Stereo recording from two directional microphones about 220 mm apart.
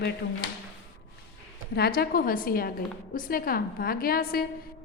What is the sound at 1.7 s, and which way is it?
A woman's voice, 45° left (ahead or behind).